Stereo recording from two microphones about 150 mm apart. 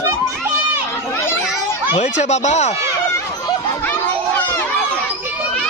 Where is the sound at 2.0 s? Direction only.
50° left (ahead or behind).